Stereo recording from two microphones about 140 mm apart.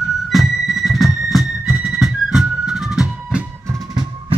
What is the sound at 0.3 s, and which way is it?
Music, centre (ahead or behind).